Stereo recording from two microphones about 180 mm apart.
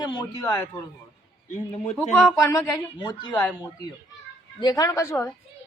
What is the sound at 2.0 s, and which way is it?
Speech, 5° left (ahead or behind).